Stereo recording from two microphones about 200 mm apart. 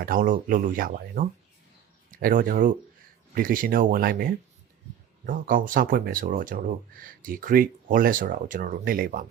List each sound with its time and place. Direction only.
0.0 s speech: 45° right (ahead or behind)